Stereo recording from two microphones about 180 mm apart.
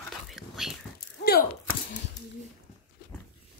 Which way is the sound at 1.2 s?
60° left (ahead or behind).